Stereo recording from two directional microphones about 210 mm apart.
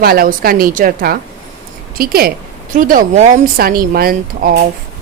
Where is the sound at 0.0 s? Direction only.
45° right (ahead or behind).